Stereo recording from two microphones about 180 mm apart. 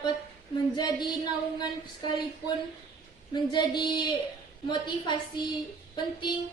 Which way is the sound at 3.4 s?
25° left (ahead or behind).